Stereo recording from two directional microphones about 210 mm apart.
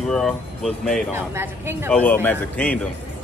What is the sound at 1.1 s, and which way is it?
Speech, 10° right (ahead or behind).